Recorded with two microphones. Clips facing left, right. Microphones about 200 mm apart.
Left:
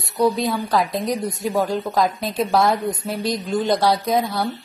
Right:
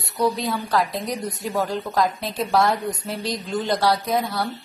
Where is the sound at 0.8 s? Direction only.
20° left (ahead or behind).